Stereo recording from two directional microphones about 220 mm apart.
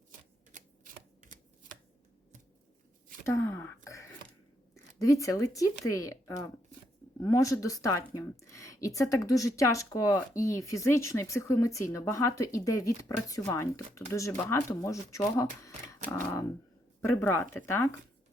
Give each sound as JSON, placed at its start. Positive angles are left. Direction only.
{"t": 0.5, "sound": "shuffling cards", "side_deg": -35}
{"t": 3.2, "sound": "speech", "side_deg": 15}
{"t": 3.8, "sound": "throat clearing", "side_deg": 15}
{"t": 4.7, "sound": "speech", "side_deg": 15}